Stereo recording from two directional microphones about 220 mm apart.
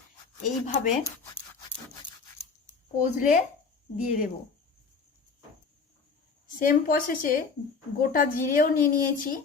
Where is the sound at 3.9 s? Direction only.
35° left (ahead or behind).